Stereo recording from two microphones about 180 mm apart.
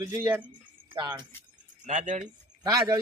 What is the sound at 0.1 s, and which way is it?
Speech, 10° right (ahead or behind).